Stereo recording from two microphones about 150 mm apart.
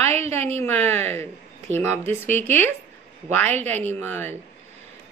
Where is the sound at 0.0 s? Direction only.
45° right (ahead or behind).